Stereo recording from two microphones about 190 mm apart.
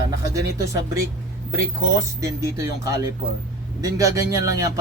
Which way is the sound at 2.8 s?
15° right (ahead or behind).